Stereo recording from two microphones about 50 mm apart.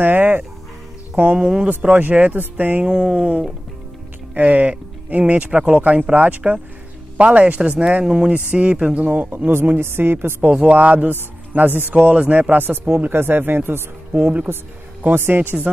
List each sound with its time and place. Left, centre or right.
0.0 s speech: right
1.1 s speech: right
1.4 s speech: centre
2.0 s speech: right
2.8 s speech: centre
9.8 s speech: right
10.5 s speech: right
11.1 s speech: right
12.0 s speech: right
12.3 s speech: right
14.1 s speech: right